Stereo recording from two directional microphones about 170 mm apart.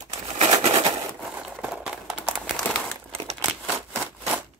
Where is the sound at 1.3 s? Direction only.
10° right (ahead or behind).